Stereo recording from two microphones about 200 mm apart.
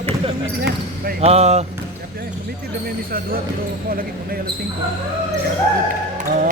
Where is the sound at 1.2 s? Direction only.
30° right (ahead or behind).